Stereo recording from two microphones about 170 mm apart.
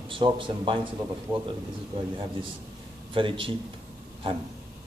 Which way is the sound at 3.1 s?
30° right (ahead or behind).